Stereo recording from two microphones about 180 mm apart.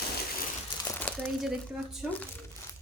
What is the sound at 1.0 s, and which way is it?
A woman's voice, centre (ahead or behind).